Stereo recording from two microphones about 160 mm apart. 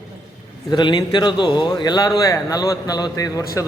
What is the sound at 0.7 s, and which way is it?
A man's voice, 25° left (ahead or behind).